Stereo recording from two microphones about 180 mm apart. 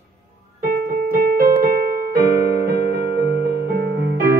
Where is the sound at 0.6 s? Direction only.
50° right (ahead or behind).